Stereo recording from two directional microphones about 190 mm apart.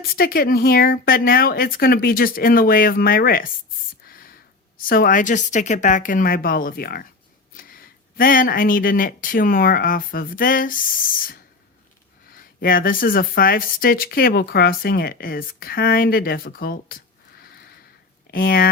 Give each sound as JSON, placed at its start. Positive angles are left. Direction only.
{"t": 0.1, "sound": "speech", "side_deg": 50}
{"t": 4.0, "sound": "a sound", "side_deg": 50}
{"t": 4.8, "sound": "speech", "side_deg": 50}
{"t": 18.3, "sound": "speech", "side_deg": 50}